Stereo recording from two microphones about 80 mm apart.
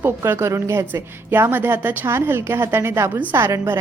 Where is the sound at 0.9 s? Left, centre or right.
Right.